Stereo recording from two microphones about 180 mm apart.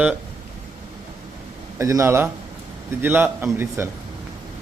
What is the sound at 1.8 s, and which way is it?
A man's voice, 15° right (ahead or behind).